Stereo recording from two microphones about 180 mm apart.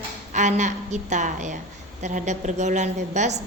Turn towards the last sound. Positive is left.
turn(degrees=-40)  # may be behind; listen again after turning